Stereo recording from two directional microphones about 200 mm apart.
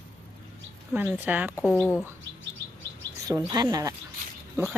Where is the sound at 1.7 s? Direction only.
10° left (ahead or behind).